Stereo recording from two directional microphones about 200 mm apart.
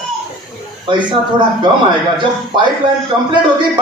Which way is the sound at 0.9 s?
25° right (ahead or behind).